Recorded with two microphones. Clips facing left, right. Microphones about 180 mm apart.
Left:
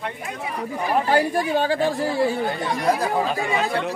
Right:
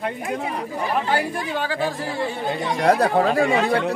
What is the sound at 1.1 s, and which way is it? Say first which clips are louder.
Speech: left 4 dB; 40° left (ahead or behind).